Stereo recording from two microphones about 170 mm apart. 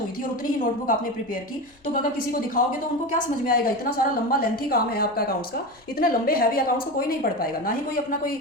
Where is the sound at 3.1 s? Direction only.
55° left (ahead or behind).